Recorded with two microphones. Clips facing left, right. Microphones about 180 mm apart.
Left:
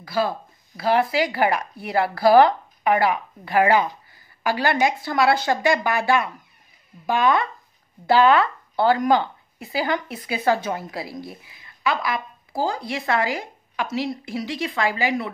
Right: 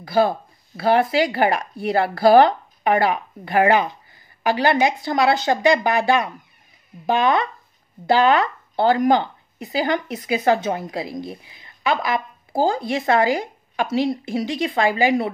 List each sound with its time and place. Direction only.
0.0 s speech: 25° right (ahead or behind)
8.2 s speech: 40° right (ahead or behind)
8.7 s speech: 25° right (ahead or behind)